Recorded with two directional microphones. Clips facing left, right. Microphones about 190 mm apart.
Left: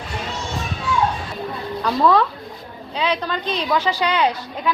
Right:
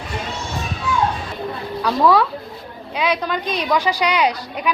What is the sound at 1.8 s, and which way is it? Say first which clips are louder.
A woman's voice: right 1 dB; 10° right (ahead or behind).